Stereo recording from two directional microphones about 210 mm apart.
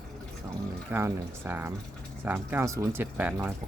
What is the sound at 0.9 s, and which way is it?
Speech, 10° right (ahead or behind).